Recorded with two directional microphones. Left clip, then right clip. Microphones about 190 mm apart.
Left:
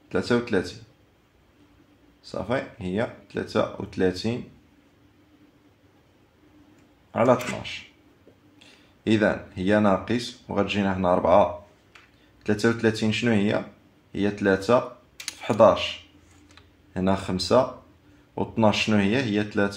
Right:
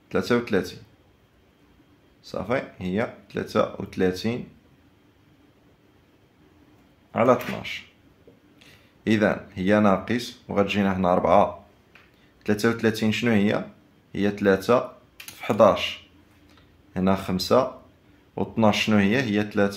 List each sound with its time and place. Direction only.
0.1 s speech: 15° right (ahead or behind)
2.2 s speech: 15° right (ahead or behind)
7.1 s speech: 20° right (ahead or behind)
12.4 s speech: 15° right (ahead or behind)